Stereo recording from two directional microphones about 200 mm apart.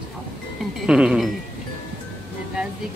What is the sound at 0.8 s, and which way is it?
Speech, 5° right (ahead or behind).